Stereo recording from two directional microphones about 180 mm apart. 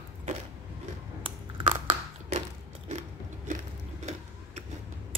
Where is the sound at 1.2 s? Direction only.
30° right (ahead or behind).